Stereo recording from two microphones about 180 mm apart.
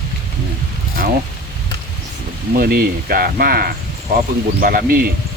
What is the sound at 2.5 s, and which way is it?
Speech, 55° right (ahead or behind).